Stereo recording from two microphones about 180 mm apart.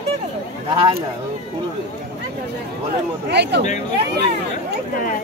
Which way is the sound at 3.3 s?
70° right (ahead or behind).